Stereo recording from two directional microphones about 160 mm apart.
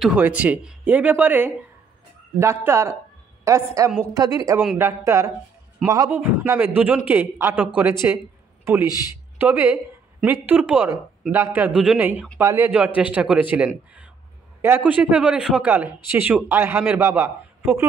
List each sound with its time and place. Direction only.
0.0 s a man's voice: 10° right (ahead or behind)
9.4 s a man's voice: 10° right (ahead or behind)